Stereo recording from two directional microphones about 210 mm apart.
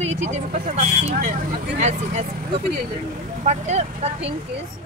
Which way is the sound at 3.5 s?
30° right (ahead or behind).